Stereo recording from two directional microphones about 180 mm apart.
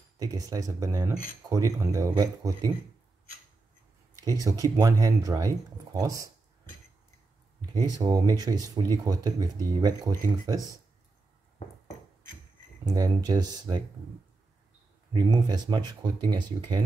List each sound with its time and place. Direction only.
0.2 s speech: 20° right (ahead or behind)
4.1 s speech: 20° right (ahead or behind)
7.7 s speech: 20° right (ahead or behind)
12.8 s speech: 20° right (ahead or behind)
15.1 s speech: 25° right (ahead or behind)